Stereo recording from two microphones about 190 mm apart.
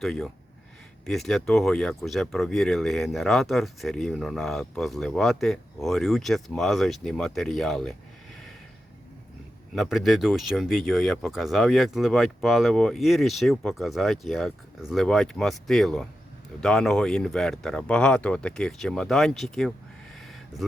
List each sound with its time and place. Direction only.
0.0 s speech: centre (ahead or behind)
9.7 s speech: centre (ahead or behind)